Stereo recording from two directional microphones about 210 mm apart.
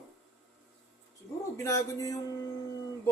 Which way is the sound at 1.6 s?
15° left (ahead or behind).